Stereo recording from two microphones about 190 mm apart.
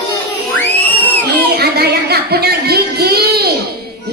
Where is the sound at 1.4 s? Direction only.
55° right (ahead or behind).